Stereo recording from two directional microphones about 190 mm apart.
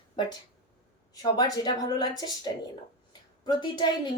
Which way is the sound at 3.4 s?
25° left (ahead or behind).